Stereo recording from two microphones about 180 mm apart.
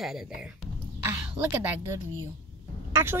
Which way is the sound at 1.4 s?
10° right (ahead or behind).